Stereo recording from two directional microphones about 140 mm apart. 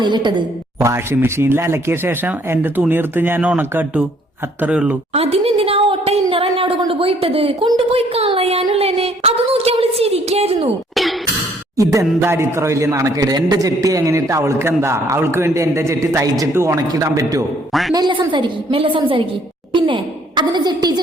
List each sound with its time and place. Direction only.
0.0 s a woman's voice: 35° right (ahead or behind)
0.8 s speech: 20° right (ahead or behind)
5.1 s a sound: 45° right (ahead or behind)
11.8 s speech: 20° right (ahead or behind)
17.7 s speech: centre (ahead or behind)
17.9 s a woman's voice: 35° right (ahead or behind)